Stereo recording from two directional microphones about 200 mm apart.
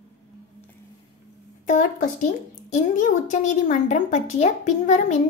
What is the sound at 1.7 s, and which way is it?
Speech, 35° left (ahead or behind).